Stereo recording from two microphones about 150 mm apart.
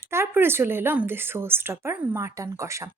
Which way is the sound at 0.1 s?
15° right (ahead or behind).